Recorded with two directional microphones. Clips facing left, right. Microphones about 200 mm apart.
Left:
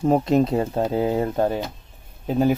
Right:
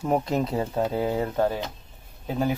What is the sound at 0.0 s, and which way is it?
Speech, 25° left (ahead or behind).